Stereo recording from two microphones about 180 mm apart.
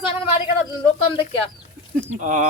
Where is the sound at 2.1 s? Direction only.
45° right (ahead or behind).